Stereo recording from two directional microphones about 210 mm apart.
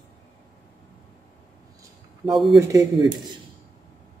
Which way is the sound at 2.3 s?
Centre (ahead or behind).